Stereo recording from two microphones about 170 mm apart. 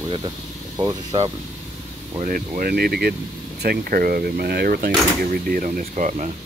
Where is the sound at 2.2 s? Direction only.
50° right (ahead or behind).